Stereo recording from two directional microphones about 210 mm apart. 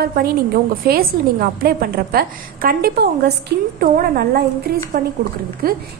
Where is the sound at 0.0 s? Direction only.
45° right (ahead or behind).